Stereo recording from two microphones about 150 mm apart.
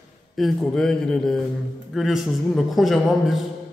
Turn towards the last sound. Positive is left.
turn(degrees=0)  # may be behind; listen again after turning